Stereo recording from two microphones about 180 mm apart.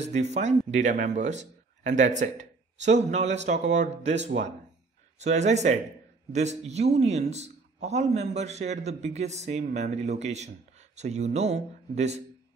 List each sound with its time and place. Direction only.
0.0 s a man's voice: 40° right (ahead or behind)
3.5 s speech: 75° right (ahead or behind)
5.2 s a man's voice: 40° right (ahead or behind)